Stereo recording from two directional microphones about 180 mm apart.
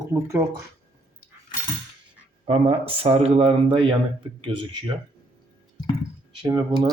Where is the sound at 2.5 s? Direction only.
35° right (ahead or behind).